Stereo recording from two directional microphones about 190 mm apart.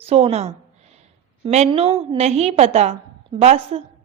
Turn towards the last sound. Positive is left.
turn(degrees=-35)  # may be behind; listen again after turning